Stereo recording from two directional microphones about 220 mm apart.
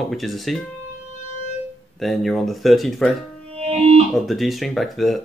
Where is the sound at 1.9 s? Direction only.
Centre (ahead or behind).